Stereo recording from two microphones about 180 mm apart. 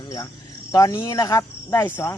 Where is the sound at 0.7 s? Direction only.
20° left (ahead or behind).